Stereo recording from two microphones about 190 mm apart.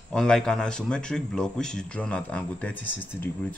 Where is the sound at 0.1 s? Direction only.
5° left (ahead or behind).